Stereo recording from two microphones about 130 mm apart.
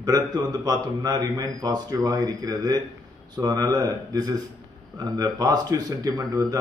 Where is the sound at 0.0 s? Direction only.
30° right (ahead or behind).